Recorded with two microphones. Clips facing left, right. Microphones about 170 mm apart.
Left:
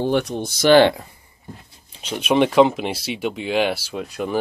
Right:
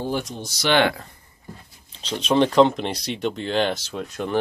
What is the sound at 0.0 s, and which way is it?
Speech, 65° left (ahead or behind).